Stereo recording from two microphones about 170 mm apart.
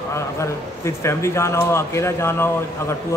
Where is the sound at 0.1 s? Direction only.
15° left (ahead or behind).